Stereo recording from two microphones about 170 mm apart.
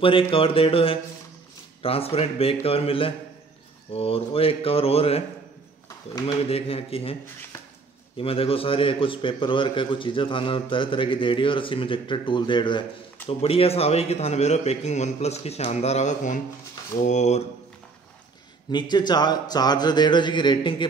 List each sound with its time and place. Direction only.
0.0 s a man's voice: 30° left (ahead or behind)
8.2 s a man's voice: 35° left (ahead or behind)
18.7 s speech: 25° left (ahead or behind)